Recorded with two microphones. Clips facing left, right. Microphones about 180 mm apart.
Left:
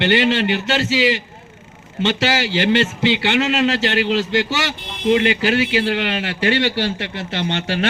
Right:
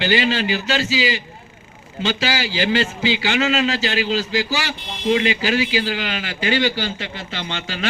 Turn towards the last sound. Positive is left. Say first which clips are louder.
# left 7 dB
turn(degrees=65)  # may be behind; listen again after turning